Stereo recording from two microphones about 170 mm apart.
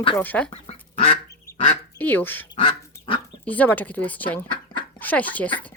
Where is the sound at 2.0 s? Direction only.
10° left (ahead or behind).